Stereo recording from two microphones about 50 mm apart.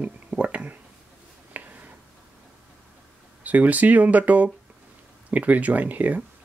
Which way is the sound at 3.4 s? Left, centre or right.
Right.